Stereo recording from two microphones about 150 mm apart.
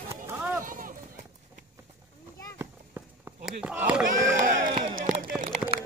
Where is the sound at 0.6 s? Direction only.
65° right (ahead or behind).